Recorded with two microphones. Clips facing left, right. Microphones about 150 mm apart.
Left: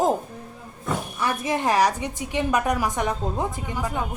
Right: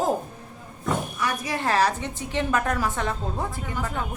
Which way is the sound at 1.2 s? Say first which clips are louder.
Left 3 dB; 20° left (ahead or behind).